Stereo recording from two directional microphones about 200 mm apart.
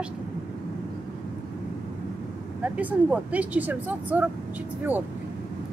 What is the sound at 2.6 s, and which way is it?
Speech, 10° right (ahead or behind).